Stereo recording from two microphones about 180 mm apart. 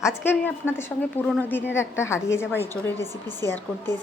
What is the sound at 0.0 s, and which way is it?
A woman's voice, 10° left (ahead or behind).